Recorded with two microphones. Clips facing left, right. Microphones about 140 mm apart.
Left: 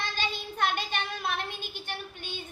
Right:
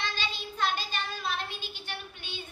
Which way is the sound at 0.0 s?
50° left (ahead or behind).